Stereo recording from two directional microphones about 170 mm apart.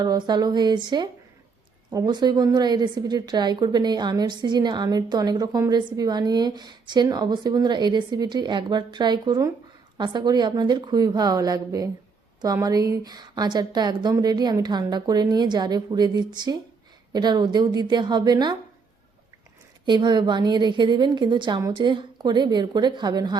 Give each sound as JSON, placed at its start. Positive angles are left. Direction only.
{"t": 0.0, "sound": "a woman's voice", "side_deg": -25}
{"t": 19.8, "sound": "a woman's voice", "side_deg": -25}